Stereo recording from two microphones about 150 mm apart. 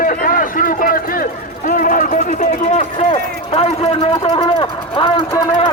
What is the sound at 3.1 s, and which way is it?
A man's voice, 40° left (ahead or behind).